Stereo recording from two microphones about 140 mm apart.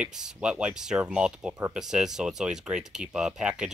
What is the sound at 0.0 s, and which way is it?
Speech, 5° right (ahead or behind).